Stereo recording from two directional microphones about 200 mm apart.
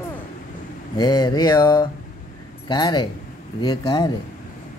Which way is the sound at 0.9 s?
20° left (ahead or behind).